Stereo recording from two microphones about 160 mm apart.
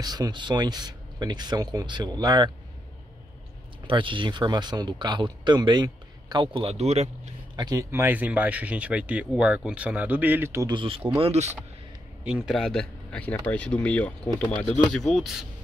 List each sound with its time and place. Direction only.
0.0 s speech: 25° right (ahead or behind)
3.8 s speech: 30° right (ahead or behind)
7.5 s speech: 25° right (ahead or behind)
7.9 s speech: 15° right (ahead or behind)
10.7 s speech: 30° right (ahead or behind)
12.3 s speech: 5° right (ahead or behind)